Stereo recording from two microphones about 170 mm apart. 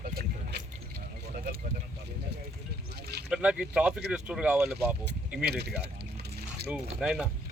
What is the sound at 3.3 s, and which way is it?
Speech, 5° right (ahead or behind).